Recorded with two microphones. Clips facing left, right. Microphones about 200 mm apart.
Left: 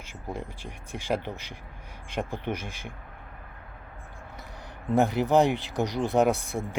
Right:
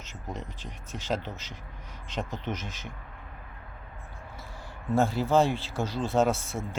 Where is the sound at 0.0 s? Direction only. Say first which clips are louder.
Left 3 dB; 10° left (ahead or behind).